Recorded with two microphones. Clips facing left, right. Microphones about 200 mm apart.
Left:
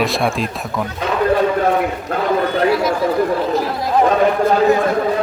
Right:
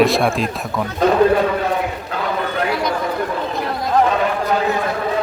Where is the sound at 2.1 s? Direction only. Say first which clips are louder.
Left 4 dB; 50° left (ahead or behind).